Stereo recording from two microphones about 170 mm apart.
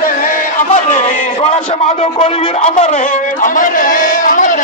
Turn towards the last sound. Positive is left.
turn(degrees=50)  # may be behind; listen again after turning